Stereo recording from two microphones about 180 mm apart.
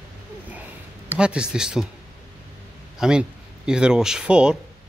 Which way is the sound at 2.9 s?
5° right (ahead or behind).